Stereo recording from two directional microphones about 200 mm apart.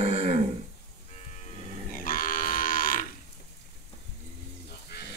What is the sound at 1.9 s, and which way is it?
Livestock, 45° left (ahead or behind).